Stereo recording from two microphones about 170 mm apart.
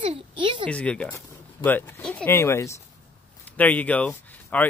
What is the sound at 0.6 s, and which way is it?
Speech, 5° left (ahead or behind).